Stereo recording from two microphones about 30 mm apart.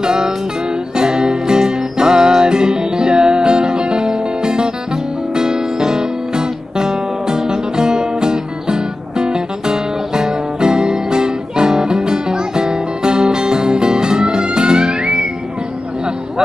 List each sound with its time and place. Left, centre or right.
0.0 s music: right